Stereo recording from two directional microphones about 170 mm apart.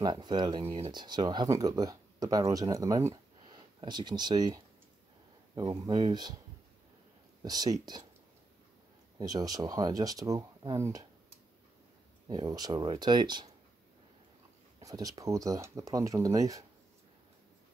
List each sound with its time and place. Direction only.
0.0 s speech: 25° right (ahead or behind)
5.6 s speech: 25° right (ahead or behind)
7.4 s speech: 20° right (ahead or behind)
9.2 s speech: 20° right (ahead or behind)
12.3 s speech: 25° right (ahead or behind)
14.8 s speech: 20° right (ahead or behind)